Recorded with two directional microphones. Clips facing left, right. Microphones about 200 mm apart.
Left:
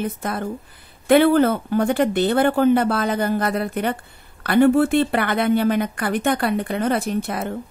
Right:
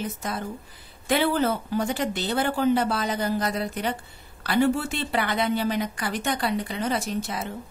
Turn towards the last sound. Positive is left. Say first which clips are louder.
# left 6 dB
turn(degrees=55)  # may be behind; listen again after turning